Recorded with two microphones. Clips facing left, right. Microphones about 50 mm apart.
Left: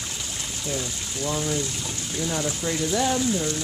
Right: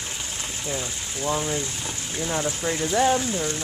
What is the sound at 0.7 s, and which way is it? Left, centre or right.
Speech, right.